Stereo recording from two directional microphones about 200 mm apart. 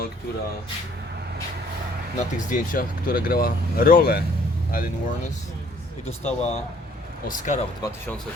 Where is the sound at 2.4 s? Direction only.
40° left (ahead or behind).